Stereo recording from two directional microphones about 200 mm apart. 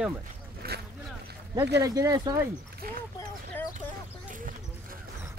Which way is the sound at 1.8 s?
15° right (ahead or behind).